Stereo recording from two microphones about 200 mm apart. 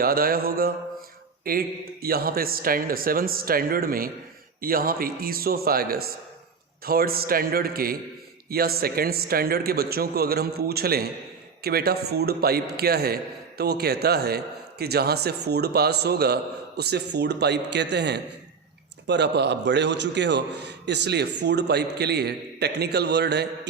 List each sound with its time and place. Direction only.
0.0 s a man's voice: 45° right (ahead or behind)